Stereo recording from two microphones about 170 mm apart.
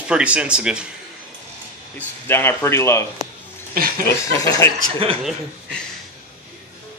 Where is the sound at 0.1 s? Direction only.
5° right (ahead or behind).